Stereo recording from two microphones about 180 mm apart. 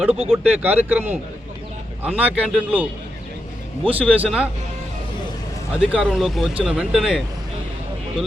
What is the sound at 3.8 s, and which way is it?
Speech, 30° right (ahead or behind).